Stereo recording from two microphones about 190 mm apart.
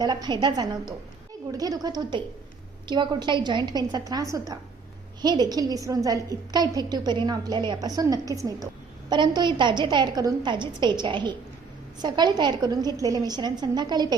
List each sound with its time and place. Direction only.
0.0 s a woman's voice: 20° right (ahead or behind)